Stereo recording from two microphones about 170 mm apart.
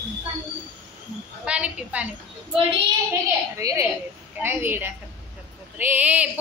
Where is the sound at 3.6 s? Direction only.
20° right (ahead or behind).